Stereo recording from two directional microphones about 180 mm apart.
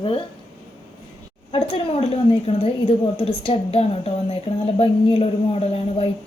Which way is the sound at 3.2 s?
30° left (ahead or behind).